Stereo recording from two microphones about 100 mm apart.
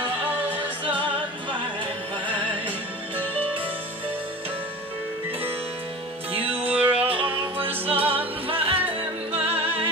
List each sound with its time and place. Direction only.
6.3 s music: 70° right (ahead or behind)